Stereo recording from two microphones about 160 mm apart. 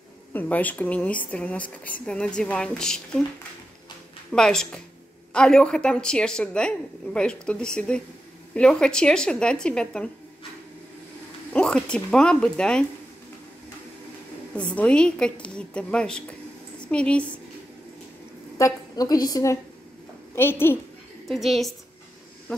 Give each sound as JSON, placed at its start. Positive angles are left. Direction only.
{"t": 0.3, "sound": "speech", "side_deg": 10}
{"t": 4.3, "sound": "a woman's voice", "side_deg": 5}
{"t": 11.5, "sound": "a woman's voice", "side_deg": 5}
{"t": 14.5, "sound": "a woman's voice", "side_deg": 5}
{"t": 18.6, "sound": "a woman's voice", "side_deg": 25}
{"t": 21.3, "sound": "a woman's voice", "side_deg": 0}